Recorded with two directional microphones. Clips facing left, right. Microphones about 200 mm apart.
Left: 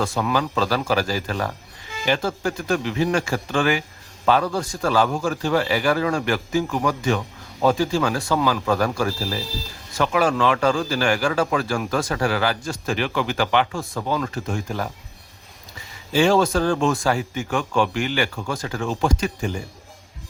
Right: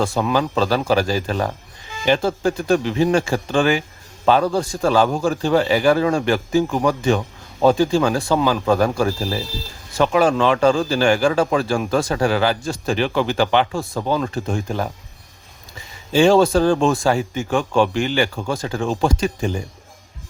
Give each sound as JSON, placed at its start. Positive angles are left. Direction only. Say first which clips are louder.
{"t": 0.0, "sound": "a man's voice", "louder": "right 3 dB", "side_deg": -25}
{"t": 16.1, "sound": "a man's voice", "louder": "right 4 dB", "side_deg": -25}